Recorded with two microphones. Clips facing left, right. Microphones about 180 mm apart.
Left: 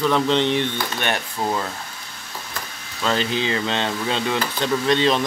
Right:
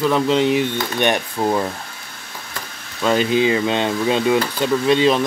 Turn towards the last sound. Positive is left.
turn(degrees=-5)  # may be behind; listen again after turning